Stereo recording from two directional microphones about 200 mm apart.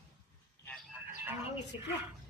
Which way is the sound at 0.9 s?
10° right (ahead or behind).